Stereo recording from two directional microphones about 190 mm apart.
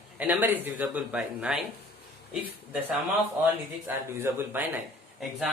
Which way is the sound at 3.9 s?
10° right (ahead or behind).